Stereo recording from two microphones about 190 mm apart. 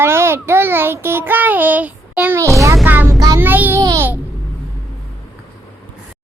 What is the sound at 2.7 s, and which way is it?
Child singing, 10° right (ahead or behind).